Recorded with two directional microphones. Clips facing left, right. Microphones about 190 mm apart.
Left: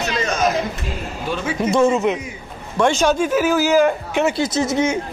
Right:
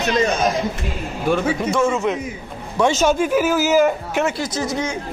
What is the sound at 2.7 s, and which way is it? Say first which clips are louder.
Speech: even; 5° right (ahead or behind).